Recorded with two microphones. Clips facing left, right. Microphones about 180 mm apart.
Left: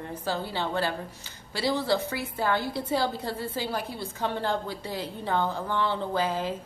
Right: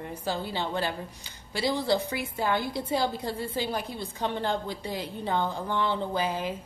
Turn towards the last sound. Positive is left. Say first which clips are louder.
# left 1 dB
turn(degrees=-15)  # may be behind; listen again after turning